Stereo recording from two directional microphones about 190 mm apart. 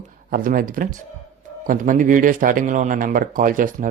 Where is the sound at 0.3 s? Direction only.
50° right (ahead or behind).